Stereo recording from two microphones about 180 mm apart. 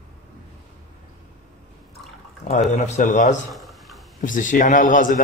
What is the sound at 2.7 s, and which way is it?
Speech, 40° left (ahead or behind).